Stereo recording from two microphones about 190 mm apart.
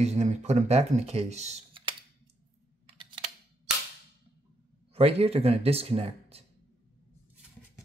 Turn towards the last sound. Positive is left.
turn(degrees=-30)  # may be behind; listen again after turning